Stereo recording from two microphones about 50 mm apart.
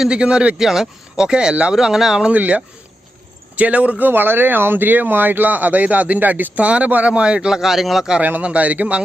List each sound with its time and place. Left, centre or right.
0.1 s a man's voice: centre
0.6 s speech: centre
1.7 s speech: centre
2.3 s speech: right; by 8.0 s centre
8.4 s a man's voice: right